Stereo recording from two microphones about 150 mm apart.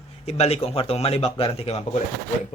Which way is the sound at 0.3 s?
45° left (ahead or behind).